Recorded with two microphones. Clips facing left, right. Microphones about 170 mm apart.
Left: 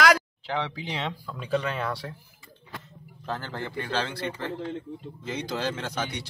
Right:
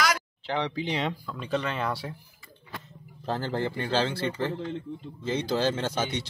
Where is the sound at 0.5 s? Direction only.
5° left (ahead or behind).